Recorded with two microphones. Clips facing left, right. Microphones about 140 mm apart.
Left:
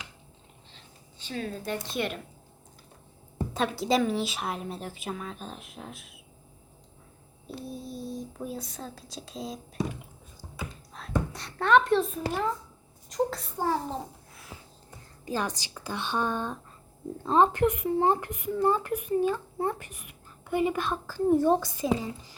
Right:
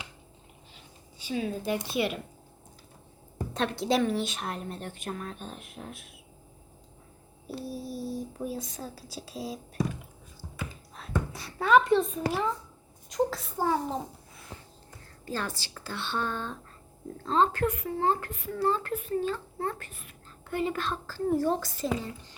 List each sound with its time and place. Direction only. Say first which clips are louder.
1.2 s speech: right 3 dB; 10° right (ahead or behind)
3.5 s a woman's voice: left 1 dB; centre (ahead or behind)
7.4 s a woman's voice: right 2 dB; 5° right (ahead or behind)
10.7 s a sound: left 1 dB; centre (ahead or behind)
11.3 s a child's voice: even; 5° right (ahead or behind)
15.2 s speech: left 3 dB; 15° left (ahead or behind)